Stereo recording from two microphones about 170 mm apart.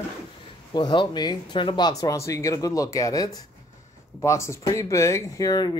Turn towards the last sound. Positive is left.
turn(degrees=20)  # may be behind; listen again after turning